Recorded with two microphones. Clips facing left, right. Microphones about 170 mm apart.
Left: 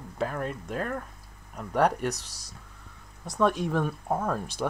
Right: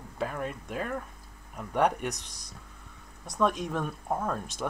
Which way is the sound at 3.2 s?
5° left (ahead or behind).